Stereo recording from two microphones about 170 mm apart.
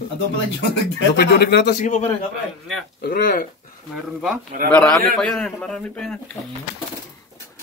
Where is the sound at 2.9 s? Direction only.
70° left (ahead or behind).